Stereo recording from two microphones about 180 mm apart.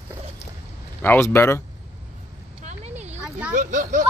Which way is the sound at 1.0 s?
15° left (ahead or behind).